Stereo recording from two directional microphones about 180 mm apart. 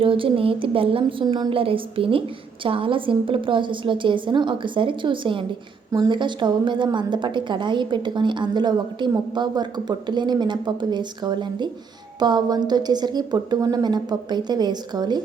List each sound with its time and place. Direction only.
0.0 s a woman's voice: 30° right (ahead or behind)